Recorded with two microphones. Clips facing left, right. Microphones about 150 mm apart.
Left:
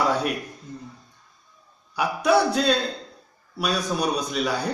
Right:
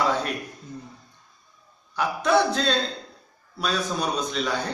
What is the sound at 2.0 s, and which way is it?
A man's voice, 10° left (ahead or behind).